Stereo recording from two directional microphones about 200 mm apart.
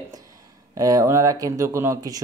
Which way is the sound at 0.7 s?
15° right (ahead or behind).